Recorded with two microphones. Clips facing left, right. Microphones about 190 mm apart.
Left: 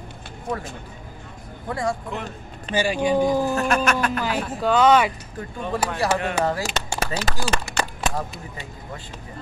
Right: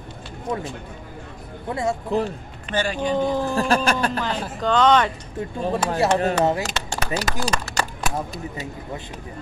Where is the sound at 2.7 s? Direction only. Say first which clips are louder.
Left 2 dB; 10° left (ahead or behind).